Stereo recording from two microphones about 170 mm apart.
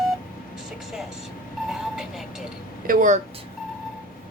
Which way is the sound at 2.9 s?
50° right (ahead or behind).